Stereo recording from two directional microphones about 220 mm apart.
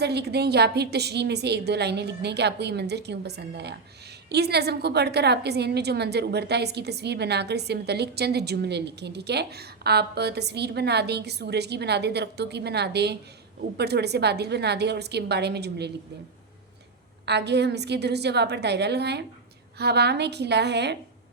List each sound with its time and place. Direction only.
0.0 s a woman's voice: 50° right (ahead or behind)
17.2 s a woman's voice: 50° right (ahead or behind)